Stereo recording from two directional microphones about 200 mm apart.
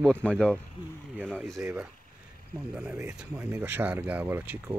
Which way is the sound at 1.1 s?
5° right (ahead or behind).